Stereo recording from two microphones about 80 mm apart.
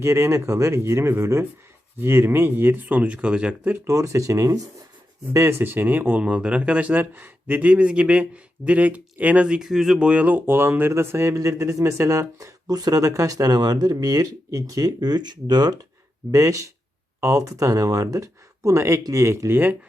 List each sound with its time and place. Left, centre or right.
0.0 s a man's voice: right; by 3.7 s centre
3.8 s a man's voice: right; by 10.1 s centre
10.1 s a man's voice: centre; by 12.5 s right
12.6 s speech: right
16.3 s a man's voice: right